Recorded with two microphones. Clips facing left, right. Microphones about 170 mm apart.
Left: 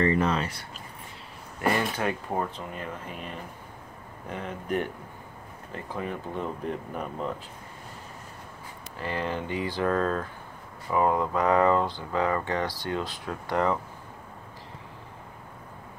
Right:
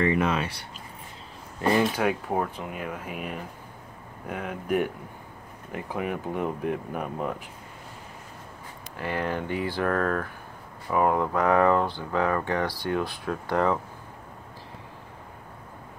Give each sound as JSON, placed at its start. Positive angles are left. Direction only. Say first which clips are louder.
{"t": 0.0, "sound": "speech", "louder": "even", "side_deg": -10}
{"t": 2.0, "sound": "speech", "louder": "right 3 dB", "side_deg": -10}
{"t": 9.0, "sound": "speech", "louder": "right 2 dB", "side_deg": -15}
{"t": 9.3, "sound": "speech", "louder": "right 2 dB", "side_deg": 15}
{"t": 10.9, "sound": "speech", "louder": "right 1 dB", "side_deg": -15}
{"t": 11.3, "sound": "speech", "louder": "right 1 dB", "side_deg": 15}